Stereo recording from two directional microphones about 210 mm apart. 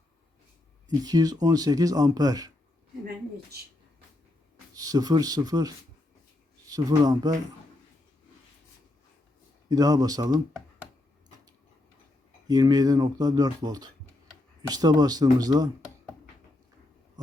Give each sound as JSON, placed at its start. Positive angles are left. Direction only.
{"t": 0.9, "sound": "speech", "side_deg": -20}
{"t": 4.7, "sound": "speech", "side_deg": -15}
{"t": 9.6, "sound": "speech", "side_deg": -15}
{"t": 12.5, "sound": "speech", "side_deg": -20}